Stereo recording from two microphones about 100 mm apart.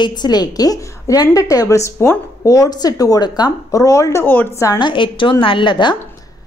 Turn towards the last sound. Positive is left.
turn(degrees=50)  # may be behind; listen again after turning